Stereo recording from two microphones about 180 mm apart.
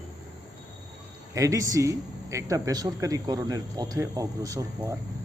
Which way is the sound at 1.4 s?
20° right (ahead or behind).